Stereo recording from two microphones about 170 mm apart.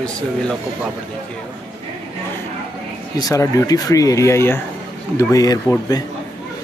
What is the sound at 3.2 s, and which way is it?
Speech, 20° left (ahead or behind).